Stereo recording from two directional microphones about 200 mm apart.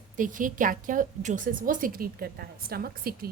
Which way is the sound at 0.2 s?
40° right (ahead or behind).